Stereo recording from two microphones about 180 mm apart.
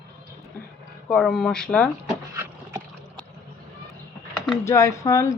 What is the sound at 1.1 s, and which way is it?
Speech, centre (ahead or behind).